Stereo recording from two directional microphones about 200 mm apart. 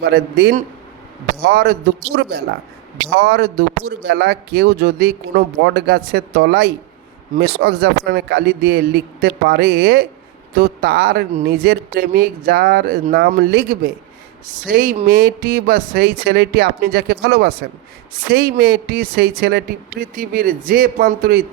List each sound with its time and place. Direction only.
0.1 s a man's voice: 55° right (ahead or behind)